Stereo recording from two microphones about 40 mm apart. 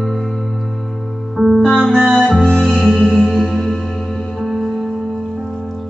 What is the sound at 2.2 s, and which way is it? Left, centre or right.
Music, left.